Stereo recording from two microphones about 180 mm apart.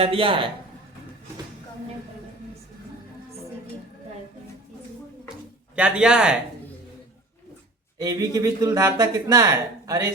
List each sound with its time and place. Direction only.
0.0 s speech: 30° right (ahead or behind)
5.7 s speech: 5° right (ahead or behind)
8.0 s speech: 20° right (ahead or behind)